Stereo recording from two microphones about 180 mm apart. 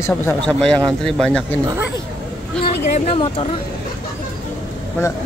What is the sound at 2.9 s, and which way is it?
Speech, 30° left (ahead or behind).